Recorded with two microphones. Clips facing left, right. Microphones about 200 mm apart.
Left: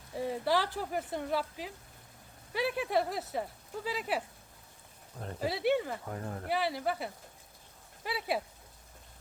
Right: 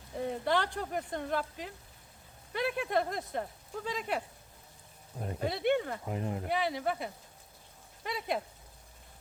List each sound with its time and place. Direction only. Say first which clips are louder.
0.1 s speech: even; 5° left (ahead or behind)
5.4 s speech: even; 5° left (ahead or behind)
6.1 s speech: right 4 dB; 15° right (ahead or behind)
6.4 s speech: left 2 dB; centre (ahead or behind)